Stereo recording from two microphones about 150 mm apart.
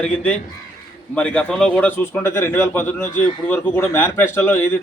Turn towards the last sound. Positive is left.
turn(degrees=15)  # may be behind; listen again after turning